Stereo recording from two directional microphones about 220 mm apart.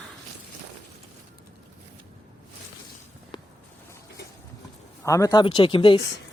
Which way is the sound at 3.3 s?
20° left (ahead or behind).